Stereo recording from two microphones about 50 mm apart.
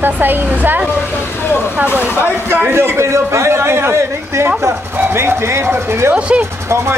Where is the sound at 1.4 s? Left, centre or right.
Left.